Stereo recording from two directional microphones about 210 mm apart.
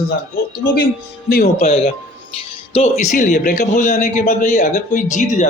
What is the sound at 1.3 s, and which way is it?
Speech, 45° left (ahead or behind).